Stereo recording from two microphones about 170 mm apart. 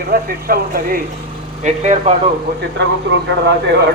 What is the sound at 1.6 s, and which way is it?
Speech, 40° right (ahead or behind).